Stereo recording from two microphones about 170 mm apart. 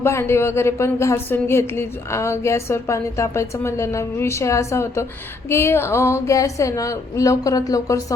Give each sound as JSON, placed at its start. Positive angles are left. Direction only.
{"t": 0.0, "sound": "a woman's voice", "side_deg": 15}